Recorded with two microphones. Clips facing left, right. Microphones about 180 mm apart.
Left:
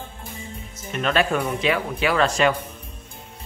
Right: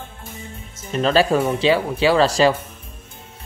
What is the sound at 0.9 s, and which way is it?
Speech, 30° right (ahead or behind).